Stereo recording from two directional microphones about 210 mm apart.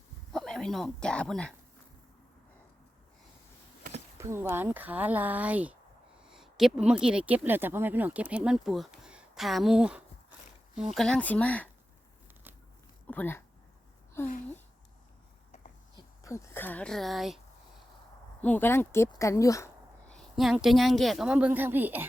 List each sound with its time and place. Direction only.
0.3 s speech: centre (ahead or behind)
4.2 s speech: 10° right (ahead or behind); by 11.7 s 5° left (ahead or behind)
13.1 s speech: 10° left (ahead or behind)
14.3 s speech: 40° left (ahead or behind)
15.5 s a sound: 35° left (ahead or behind)
16.0 s speech: 15° left (ahead or behind); by 17.4 s centre (ahead or behind)
18.4 s speech: 10° left (ahead or behind); by 22.0 s 10° right (ahead or behind)